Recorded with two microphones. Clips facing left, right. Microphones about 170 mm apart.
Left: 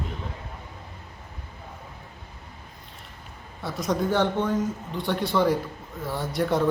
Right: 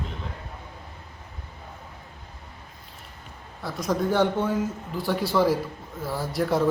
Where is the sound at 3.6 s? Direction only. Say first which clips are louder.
Even; centre (ahead or behind).